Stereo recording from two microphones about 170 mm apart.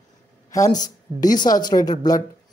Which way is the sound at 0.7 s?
25° left (ahead or behind).